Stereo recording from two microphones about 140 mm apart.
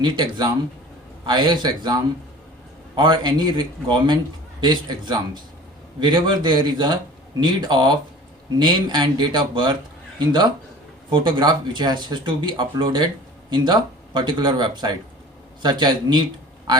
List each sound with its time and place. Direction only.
0.0 s a man's voice: 30° right (ahead or behind)